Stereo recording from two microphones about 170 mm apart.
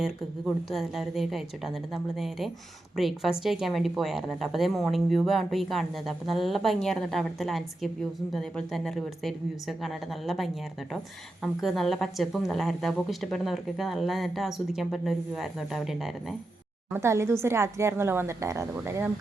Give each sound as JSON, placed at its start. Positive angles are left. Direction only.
{"t": 0.0, "sound": "speech", "side_deg": 0}
{"t": 16.9, "sound": "a woman's voice", "side_deg": -15}